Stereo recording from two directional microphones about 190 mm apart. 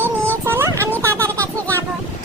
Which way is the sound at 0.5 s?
10° right (ahead or behind).